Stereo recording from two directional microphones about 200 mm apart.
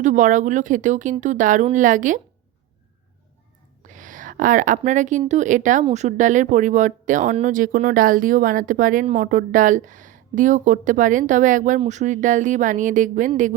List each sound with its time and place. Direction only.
0.0 s speech: 40° right (ahead or behind)
3.8 s a sound: 40° right (ahead or behind)
4.8 s speech: 40° right (ahead or behind)